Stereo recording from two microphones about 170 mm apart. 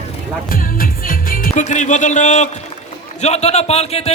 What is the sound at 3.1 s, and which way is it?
Speech, 40° left (ahead or behind).